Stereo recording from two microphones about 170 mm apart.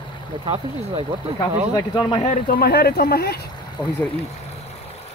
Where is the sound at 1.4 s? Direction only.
25° left (ahead or behind).